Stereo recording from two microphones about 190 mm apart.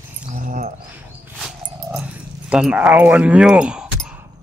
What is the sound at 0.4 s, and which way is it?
Dog, 45° right (ahead or behind).